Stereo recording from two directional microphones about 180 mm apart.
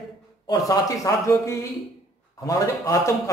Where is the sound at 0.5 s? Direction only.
20° left (ahead or behind).